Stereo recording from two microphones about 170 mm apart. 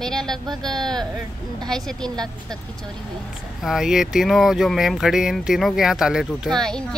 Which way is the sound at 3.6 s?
Centre (ahead or behind).